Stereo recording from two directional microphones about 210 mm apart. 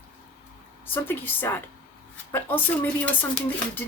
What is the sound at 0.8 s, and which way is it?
Speech, 10° left (ahead or behind).